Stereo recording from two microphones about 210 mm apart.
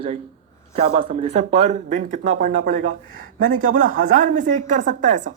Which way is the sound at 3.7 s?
40° right (ahead or behind).